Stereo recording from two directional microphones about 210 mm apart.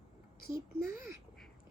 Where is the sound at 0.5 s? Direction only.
15° right (ahead or behind).